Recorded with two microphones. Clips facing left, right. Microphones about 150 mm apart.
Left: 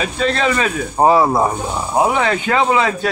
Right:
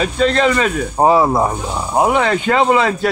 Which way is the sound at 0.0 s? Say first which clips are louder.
Right 3 dB; 5° left (ahead or behind).